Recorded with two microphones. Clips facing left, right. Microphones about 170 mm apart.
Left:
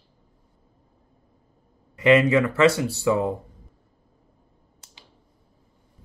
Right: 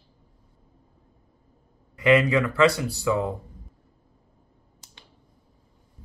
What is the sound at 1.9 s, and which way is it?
Speech, 25° left (ahead or behind).